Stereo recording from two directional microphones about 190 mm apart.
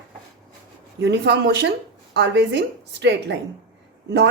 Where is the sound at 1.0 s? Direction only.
65° right (ahead or behind).